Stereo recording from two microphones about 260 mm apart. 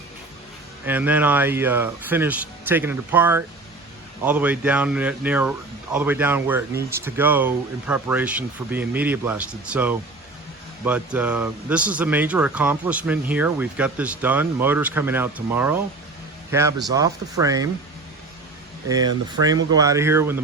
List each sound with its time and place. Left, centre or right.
0.9 s a man's voice: centre
18.9 s a man's voice: centre